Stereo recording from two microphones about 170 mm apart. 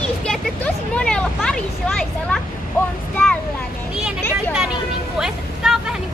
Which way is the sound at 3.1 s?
5° left (ahead or behind).